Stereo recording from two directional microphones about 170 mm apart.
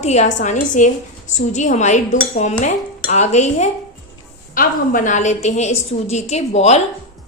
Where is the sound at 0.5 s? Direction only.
50° left (ahead or behind).